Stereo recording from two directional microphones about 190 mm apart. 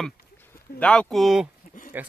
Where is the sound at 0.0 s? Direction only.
10° left (ahead or behind).